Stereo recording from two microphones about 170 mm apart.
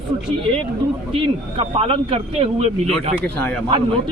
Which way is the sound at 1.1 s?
30° right (ahead or behind).